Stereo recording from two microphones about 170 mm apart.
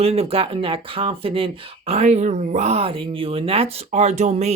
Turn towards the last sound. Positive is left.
turn(degrees=-40)  # may be behind; listen again after turning